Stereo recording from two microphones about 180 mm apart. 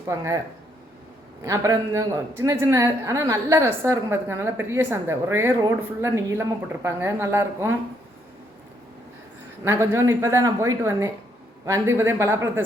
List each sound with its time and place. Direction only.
0.1 s a man's voice: 15° right (ahead or behind)
9.6 s a man's voice: 15° right (ahead or behind)